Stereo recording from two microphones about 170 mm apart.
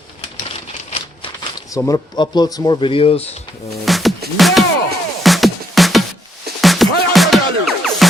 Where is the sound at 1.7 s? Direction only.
25° left (ahead or behind).